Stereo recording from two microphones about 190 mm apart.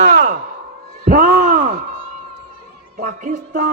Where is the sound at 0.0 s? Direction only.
45° right (ahead or behind).